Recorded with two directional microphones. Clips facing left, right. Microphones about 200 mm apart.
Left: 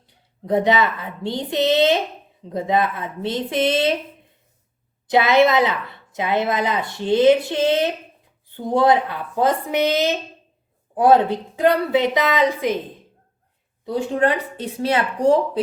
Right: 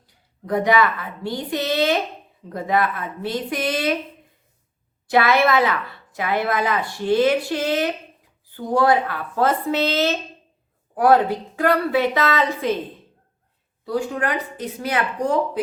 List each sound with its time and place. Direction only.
0.4 s a woman's voice: 25° left (ahead or behind)
5.0 s a woman's voice: 20° left (ahead or behind)
13.8 s a woman's voice: 25° left (ahead or behind)